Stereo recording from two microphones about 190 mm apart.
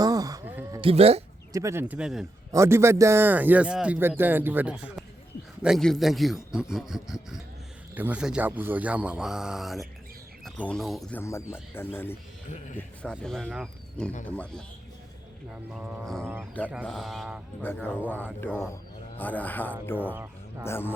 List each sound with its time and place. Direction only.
0.0 s a sound: 20° right (ahead or behind)
0.8 s speech: 30° right (ahead or behind)
1.5 s speech: 15° right (ahead or behind)
2.5 s a man's voice: 15° right (ahead or behind); by 11.2 s centre (ahead or behind)
11.2 s a man's voice: 15° left (ahead or behind)
12.5 s speech: 40° left (ahead or behind)
13.0 s a man's voice: 5° left (ahead or behind)
15.7 s a man's voice: centre (ahead or behind)
16.8 s a man's voice: centre (ahead or behind)
18.3 s a man's voice: 10° left (ahead or behind)